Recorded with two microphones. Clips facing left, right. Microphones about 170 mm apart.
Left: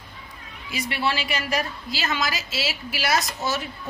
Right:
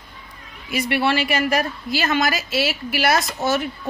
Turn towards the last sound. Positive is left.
turn(degrees=-55)  # may be behind; listen again after turning